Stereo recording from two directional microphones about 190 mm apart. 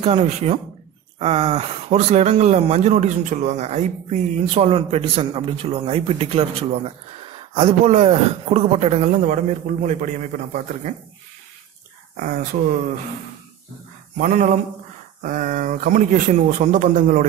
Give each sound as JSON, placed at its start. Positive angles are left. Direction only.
{"t": 0.0, "sound": "speech", "side_deg": -35}
{"t": 14.1, "sound": "speech", "side_deg": -40}